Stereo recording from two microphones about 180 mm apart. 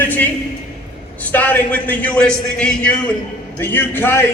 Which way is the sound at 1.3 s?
10° left (ahead or behind).